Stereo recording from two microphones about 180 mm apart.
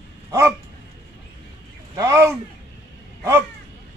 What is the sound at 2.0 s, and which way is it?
Speech, 15° right (ahead or behind).